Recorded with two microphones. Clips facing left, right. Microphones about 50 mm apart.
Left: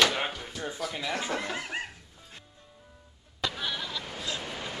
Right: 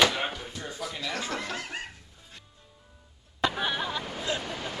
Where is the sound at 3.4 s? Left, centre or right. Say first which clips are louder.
Right 5 dB; right.